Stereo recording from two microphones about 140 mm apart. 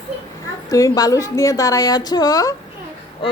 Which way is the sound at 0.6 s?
25° left (ahead or behind).